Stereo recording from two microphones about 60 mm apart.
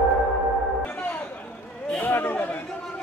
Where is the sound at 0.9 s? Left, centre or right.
Left.